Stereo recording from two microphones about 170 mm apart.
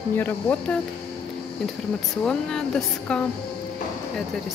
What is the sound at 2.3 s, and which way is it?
Speech, 5° left (ahead or behind).